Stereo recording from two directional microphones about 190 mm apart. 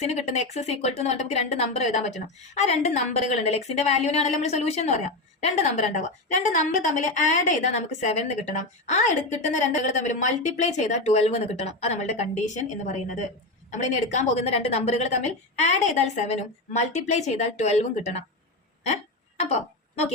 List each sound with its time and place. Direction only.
0.0 s speech: 35° left (ahead or behind)